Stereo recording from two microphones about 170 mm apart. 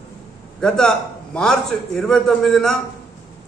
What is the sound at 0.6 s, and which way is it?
A man's voice, 5° left (ahead or behind).